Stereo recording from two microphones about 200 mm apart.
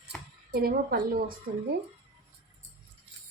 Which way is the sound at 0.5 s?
50° right (ahead or behind).